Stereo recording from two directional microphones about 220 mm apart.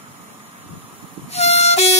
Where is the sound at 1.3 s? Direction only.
30° left (ahead or behind).